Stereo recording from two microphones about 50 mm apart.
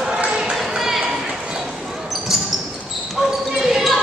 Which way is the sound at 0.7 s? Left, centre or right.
Centre.